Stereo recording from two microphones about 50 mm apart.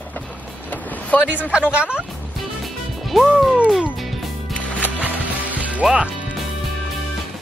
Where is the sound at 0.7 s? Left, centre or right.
Left.